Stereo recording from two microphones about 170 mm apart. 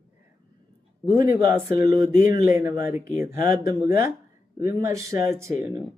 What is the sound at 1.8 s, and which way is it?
Speech, 15° right (ahead or behind).